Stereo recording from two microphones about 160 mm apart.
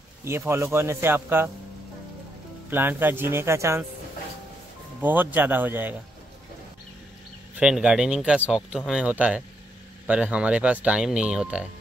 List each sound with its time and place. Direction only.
0.2 s speech: 15° right (ahead or behind)
2.7 s speech: 10° right (ahead or behind)
5.0 s speech: 10° right (ahead or behind)
7.5 s speech: 5° right (ahead or behind)